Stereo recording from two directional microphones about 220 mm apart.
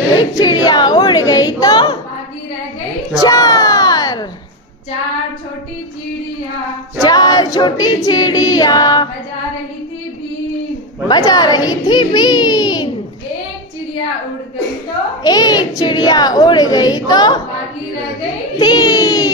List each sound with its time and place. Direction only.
0.2 s a sound: 20° left (ahead or behind)
3.2 s a sound: 15° left (ahead or behind)
7.0 s a woman's voice: 15° left (ahead or behind)
11.1 s a woman's voice: 15° left (ahead or behind)
15.2 s a woman's voice: 15° left (ahead or behind)
18.6 s a woman's voice: 20° left (ahead or behind)